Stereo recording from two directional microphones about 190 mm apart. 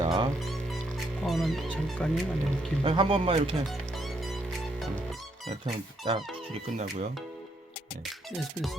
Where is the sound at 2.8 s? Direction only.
30° right (ahead or behind).